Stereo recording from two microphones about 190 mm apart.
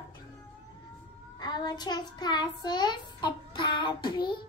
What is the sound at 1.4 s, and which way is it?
A child's voice, 20° left (ahead or behind).